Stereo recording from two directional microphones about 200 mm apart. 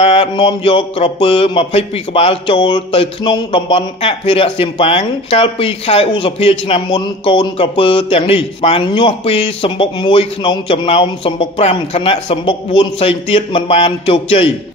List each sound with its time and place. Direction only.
0.0 s speech: 30° left (ahead or behind)